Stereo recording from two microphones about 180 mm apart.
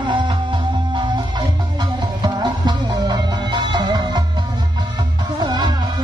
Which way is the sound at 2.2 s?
25° right (ahead or behind).